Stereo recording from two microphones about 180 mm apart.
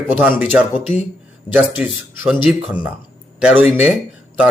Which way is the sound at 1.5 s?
25° left (ahead or behind).